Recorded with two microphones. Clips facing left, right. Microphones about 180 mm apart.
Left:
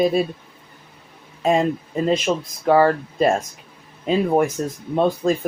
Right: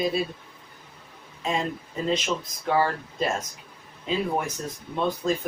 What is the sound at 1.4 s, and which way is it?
Speech, 50° left (ahead or behind).